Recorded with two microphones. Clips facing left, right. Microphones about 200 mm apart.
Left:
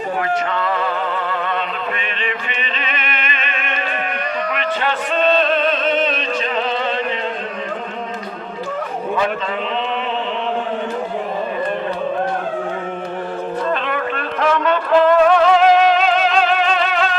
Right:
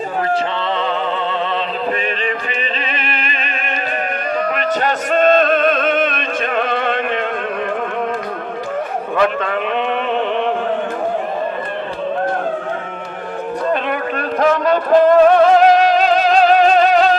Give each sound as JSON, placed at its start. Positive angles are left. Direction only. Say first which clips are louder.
{"t": 2.9, "sound": "music", "louder": "right 1 dB", "side_deg": -35}
{"t": 9.1, "sound": "a man's voice", "louder": "right 5 dB", "side_deg": -60}
{"t": 14.2, "sound": "music", "louder": "right 4 dB", "side_deg": -40}